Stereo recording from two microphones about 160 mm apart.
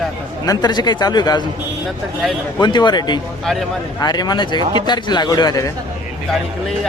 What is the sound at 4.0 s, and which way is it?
A man's voice, 25° left (ahead or behind).